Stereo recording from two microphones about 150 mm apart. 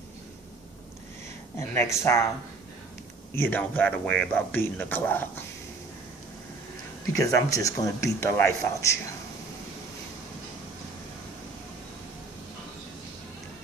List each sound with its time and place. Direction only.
1.6 s speech: 15° left (ahead or behind)
3.3 s speech: 10° left (ahead or behind)
7.2 s a man's voice: 20° left (ahead or behind)